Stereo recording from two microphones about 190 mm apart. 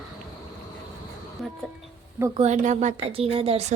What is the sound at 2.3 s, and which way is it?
Speech, 40° right (ahead or behind).